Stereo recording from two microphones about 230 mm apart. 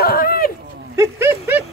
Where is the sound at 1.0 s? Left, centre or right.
Centre.